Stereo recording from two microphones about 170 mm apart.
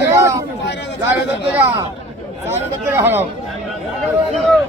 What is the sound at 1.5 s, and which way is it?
Speech, 15° right (ahead or behind).